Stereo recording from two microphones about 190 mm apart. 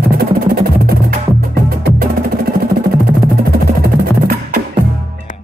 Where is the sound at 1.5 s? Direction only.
55° right (ahead or behind).